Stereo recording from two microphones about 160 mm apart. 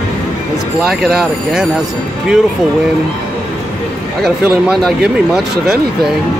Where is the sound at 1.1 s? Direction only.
5° right (ahead or behind).